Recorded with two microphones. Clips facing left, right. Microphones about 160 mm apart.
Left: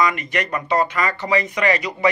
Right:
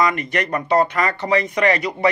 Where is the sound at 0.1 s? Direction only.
55° right (ahead or behind).